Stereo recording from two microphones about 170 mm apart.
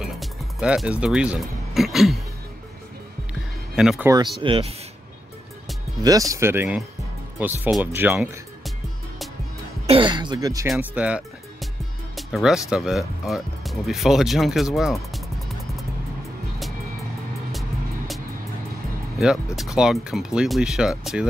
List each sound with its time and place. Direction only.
0.0 s music: 5° right (ahead or behind)
3.7 s speech: 5° right (ahead or behind)
4.4 s speech: 30° right (ahead or behind)
6.0 s speech: 20° right (ahead or behind)
9.8 s speech: 30° right (ahead or behind)
10.7 s speech: 5° right (ahead or behind)
17.5 s music: centre (ahead or behind)
19.1 s speech: centre (ahead or behind)